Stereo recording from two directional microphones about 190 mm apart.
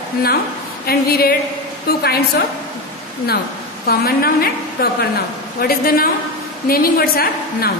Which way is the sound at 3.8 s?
55° left (ahead or behind).